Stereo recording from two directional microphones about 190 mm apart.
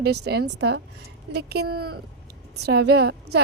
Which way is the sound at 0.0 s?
60° right (ahead or behind).